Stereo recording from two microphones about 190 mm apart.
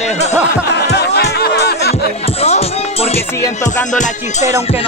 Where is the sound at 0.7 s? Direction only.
60° left (ahead or behind).